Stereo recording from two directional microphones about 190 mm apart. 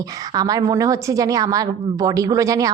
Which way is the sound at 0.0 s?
20° right (ahead or behind).